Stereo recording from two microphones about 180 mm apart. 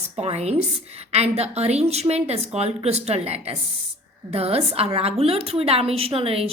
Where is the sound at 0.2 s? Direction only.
35° right (ahead or behind).